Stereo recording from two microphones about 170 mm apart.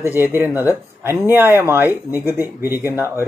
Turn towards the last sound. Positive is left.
turn(degrees=-15)  # may be behind; listen again after turning